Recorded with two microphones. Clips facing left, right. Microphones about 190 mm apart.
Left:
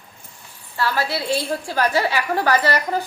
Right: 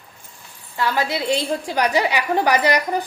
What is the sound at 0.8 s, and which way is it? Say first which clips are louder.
A woman's voice: right 1 dB; 20° right (ahead or behind).